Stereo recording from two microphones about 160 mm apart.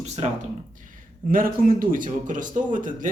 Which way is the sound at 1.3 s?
60° right (ahead or behind).